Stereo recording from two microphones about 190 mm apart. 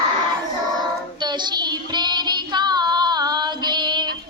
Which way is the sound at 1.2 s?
20° right (ahead or behind).